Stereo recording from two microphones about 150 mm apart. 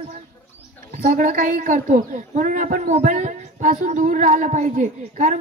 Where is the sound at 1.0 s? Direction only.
60° right (ahead or behind).